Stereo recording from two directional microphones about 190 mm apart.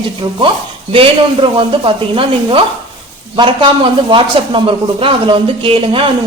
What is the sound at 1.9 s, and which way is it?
Speech, 30° right (ahead or behind).